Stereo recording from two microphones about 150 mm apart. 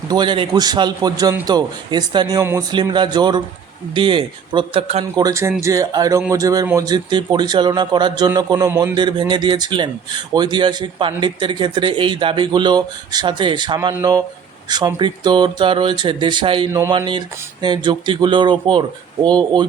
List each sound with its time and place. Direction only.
0.1 s a man's voice: 30° right (ahead or behind)
5.1 s a man's voice: 20° right (ahead or behind)